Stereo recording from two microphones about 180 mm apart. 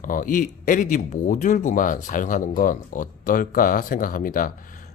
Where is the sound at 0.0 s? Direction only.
50° left (ahead or behind).